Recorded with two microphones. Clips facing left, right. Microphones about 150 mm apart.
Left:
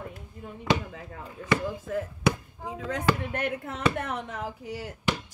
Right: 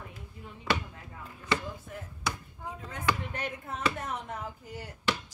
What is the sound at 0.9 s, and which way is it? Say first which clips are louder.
Speech: left 7 dB; 90° left.